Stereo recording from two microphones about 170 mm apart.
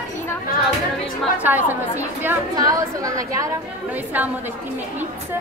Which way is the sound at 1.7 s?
10° right (ahead or behind).